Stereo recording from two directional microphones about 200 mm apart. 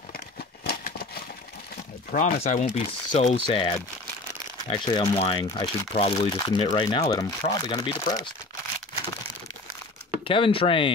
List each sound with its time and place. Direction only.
2.1 s speech: 40° left (ahead or behind); by 8.2 s 20° left (ahead or behind)
10.2 s speech: 25° left (ahead or behind)